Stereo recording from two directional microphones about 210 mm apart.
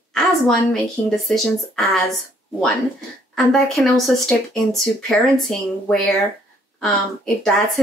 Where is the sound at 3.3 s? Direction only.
5° left (ahead or behind).